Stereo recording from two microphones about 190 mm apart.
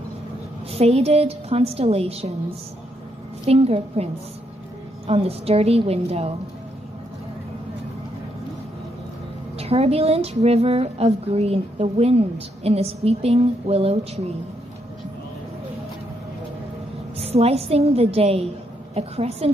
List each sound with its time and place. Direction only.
0.7 s a woman's voice: 35° right (ahead or behind)
3.4 s a woman's voice: 30° right (ahead or behind)
9.6 s a woman's voice: 30° right (ahead or behind)
17.2 s a woman's voice: 30° right (ahead or behind)